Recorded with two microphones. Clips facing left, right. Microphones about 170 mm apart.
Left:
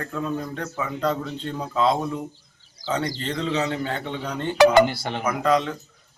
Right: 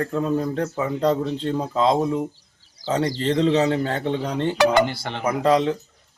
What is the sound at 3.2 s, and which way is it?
A man's voice, 35° right (ahead or behind).